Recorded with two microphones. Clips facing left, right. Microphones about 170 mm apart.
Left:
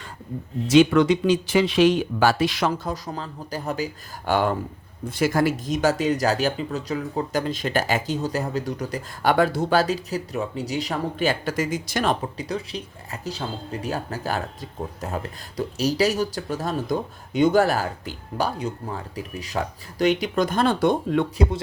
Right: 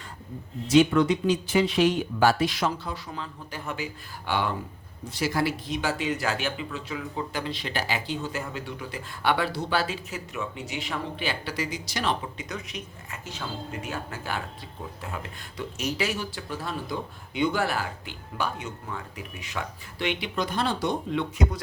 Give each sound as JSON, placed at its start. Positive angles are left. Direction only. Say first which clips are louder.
{"t": 0.7, "sound": "speech", "louder": "left 4 dB", "side_deg": 90}
{"t": 2.7, "sound": "speech", "louder": "left 6 dB", "side_deg": 40}
{"t": 12.4, "sound": "speech", "louder": "left 7 dB", "side_deg": 30}